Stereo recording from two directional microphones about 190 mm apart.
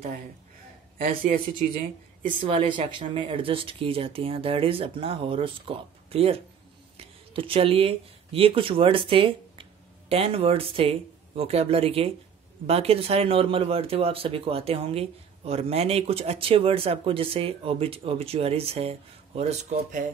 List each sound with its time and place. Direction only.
0.9 s speech: 50° right (ahead or behind)
2.2 s speech: 30° right (ahead or behind)